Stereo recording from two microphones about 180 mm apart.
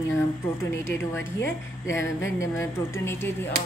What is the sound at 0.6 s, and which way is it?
A woman's voice, 15° left (ahead or behind).